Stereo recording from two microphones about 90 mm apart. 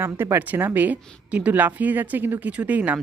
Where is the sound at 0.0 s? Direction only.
25° right (ahead or behind).